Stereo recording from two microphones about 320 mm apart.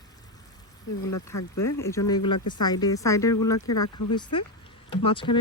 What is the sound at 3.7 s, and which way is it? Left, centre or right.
Speech, left.